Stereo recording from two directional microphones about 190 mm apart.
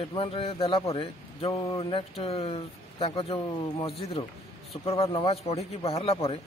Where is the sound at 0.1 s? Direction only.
30° left (ahead or behind).